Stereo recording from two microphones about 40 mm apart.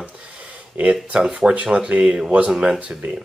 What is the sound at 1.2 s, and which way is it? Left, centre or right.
Speech, right.